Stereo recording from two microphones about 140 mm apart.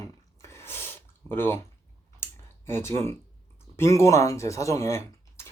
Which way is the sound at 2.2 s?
15° left (ahead or behind).